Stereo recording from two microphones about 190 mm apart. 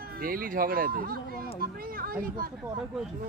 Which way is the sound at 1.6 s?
50° right (ahead or behind).